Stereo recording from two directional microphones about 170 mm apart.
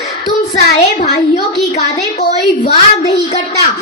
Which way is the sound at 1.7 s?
40° left (ahead or behind).